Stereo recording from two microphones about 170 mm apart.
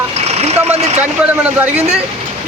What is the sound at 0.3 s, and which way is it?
Vehicle, 40° right (ahead or behind).